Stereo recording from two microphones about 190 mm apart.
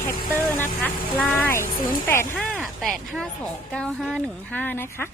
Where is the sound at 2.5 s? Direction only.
Centre (ahead or behind).